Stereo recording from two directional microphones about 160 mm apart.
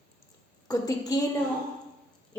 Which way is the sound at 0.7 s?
25° left (ahead or behind).